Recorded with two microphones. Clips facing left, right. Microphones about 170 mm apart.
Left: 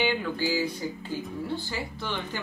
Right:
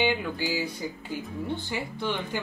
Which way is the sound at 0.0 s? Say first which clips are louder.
Even; 15° right (ahead or behind).